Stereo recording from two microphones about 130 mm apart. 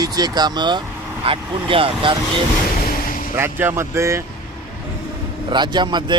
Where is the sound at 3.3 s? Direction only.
15° right (ahead or behind).